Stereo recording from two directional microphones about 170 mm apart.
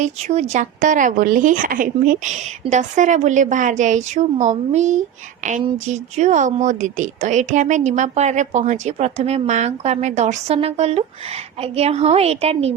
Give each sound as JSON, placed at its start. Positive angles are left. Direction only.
{"t": 0.0, "sound": "a woman's voice", "side_deg": -40}